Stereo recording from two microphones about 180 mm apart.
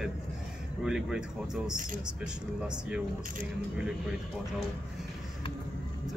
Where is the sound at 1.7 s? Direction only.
50° right (ahead or behind).